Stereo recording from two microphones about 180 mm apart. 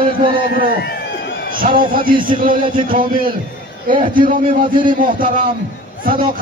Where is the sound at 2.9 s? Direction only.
50° right (ahead or behind).